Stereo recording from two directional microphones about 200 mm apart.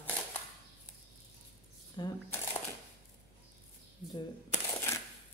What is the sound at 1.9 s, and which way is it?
Speech, 20° left (ahead or behind).